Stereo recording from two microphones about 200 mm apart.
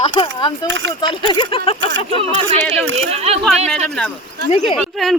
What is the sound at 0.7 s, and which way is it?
Speech, 70° right (ahead or behind).